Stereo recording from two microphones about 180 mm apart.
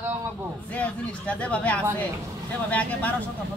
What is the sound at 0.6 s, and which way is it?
Speech, 10° left (ahead or behind).